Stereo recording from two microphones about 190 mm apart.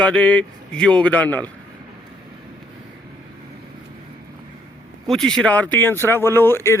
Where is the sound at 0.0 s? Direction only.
5° left (ahead or behind).